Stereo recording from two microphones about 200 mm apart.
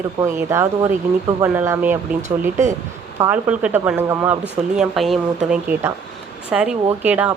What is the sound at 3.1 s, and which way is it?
Speech, 10° right (ahead or behind).